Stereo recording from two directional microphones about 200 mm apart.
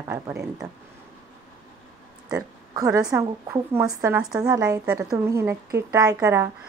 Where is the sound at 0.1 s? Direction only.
15° right (ahead or behind).